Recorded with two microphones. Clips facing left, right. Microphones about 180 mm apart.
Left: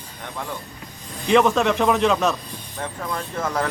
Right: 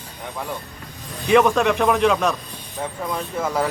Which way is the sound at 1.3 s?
5° right (ahead or behind).